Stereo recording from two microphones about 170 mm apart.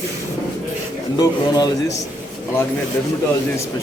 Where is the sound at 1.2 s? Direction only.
25° left (ahead or behind).